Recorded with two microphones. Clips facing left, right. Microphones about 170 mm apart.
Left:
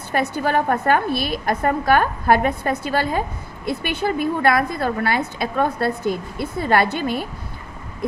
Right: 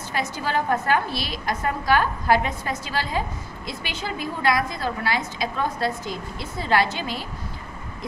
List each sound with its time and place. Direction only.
0.1 s a woman's voice: 55° left (ahead or behind)